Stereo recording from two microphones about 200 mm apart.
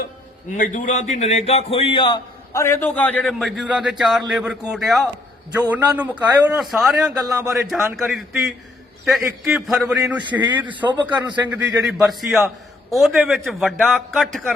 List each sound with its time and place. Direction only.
0.5 s a man's voice: 40° left (ahead or behind); by 10.7 s 10° right (ahead or behind)
10.7 s a man's voice: 25° right (ahead or behind)
11.4 s a man's voice: 10° right (ahead or behind)